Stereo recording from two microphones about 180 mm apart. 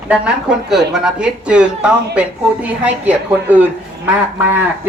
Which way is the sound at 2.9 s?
10° right (ahead or behind).